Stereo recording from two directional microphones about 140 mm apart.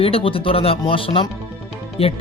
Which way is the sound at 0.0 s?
40° left (ahead or behind).